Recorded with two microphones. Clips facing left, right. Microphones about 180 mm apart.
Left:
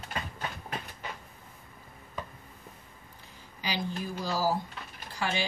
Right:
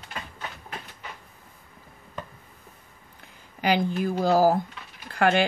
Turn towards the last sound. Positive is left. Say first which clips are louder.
# right 11 dB
turn(degrees=-60)  # may be behind; listen again after turning